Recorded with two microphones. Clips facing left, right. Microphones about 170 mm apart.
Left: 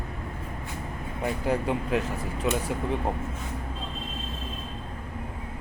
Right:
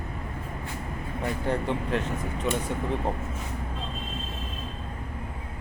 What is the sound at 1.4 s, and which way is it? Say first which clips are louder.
Speech: left 1 dB; 5° left (ahead or behind).